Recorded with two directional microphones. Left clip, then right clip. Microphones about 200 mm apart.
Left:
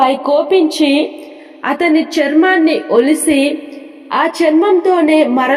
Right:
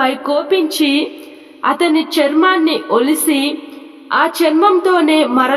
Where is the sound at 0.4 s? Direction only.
Centre (ahead or behind).